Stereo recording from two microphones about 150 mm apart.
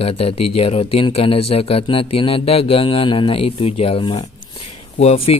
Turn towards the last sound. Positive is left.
turn(degrees=45)  # may be behind; listen again after turning